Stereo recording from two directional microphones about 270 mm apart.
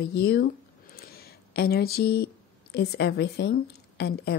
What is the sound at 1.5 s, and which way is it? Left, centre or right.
Speech, left.